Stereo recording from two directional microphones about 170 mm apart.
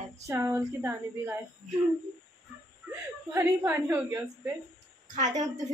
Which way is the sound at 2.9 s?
10° right (ahead or behind).